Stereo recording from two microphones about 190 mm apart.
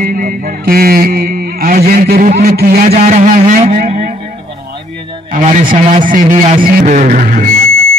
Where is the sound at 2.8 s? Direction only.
40° right (ahead or behind).